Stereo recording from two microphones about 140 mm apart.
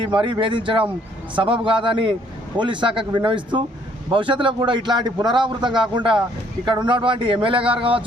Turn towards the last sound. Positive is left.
turn(degrees=-40)  # may be behind; listen again after turning